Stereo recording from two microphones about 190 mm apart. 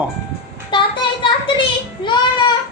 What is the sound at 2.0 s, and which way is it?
Child singing, 25° left (ahead or behind).